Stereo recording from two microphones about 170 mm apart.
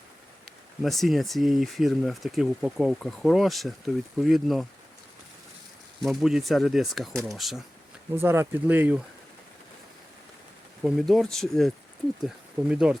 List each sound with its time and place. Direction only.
0.8 s speech: centre (ahead or behind)
6.0 s speech: centre (ahead or behind)
8.1 s speech: 15° right (ahead or behind)
10.8 s speech: centre (ahead or behind)